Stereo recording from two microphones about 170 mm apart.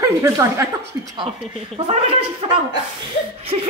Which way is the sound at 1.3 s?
35° right (ahead or behind).